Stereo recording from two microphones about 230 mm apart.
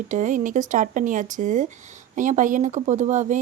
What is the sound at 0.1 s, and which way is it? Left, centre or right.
A woman's voice, right.